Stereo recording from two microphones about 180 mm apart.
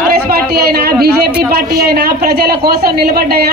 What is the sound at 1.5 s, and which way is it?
A woman's voice, 60° right (ahead or behind).